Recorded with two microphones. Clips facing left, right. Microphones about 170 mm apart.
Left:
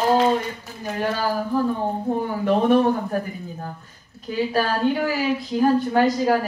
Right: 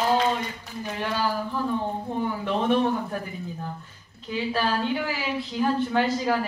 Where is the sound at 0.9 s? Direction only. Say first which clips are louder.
Left 4 dB; 45° left (ahead or behind).